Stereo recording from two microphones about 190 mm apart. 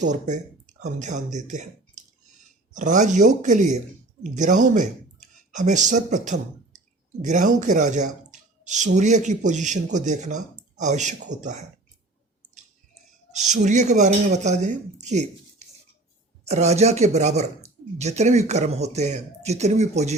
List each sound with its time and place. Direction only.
0.0 s speech: 40° right (ahead or behind)
13.6 s speech: 40° right (ahead or behind)